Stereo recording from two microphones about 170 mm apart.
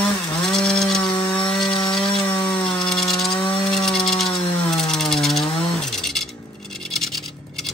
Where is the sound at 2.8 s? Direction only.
5° left (ahead or behind).